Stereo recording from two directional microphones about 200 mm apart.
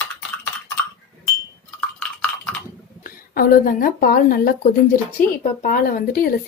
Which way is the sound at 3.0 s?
45° left (ahead or behind).